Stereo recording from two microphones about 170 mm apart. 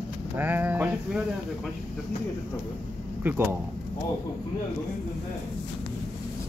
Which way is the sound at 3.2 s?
15° right (ahead or behind).